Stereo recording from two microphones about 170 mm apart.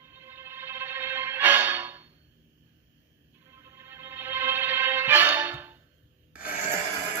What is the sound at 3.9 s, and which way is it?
Music, 15° right (ahead or behind).